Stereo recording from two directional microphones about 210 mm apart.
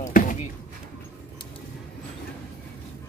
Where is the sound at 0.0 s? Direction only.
40° left (ahead or behind).